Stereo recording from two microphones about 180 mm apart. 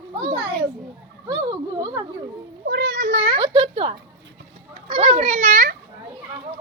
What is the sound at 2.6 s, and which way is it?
Speech, 70° right (ahead or behind).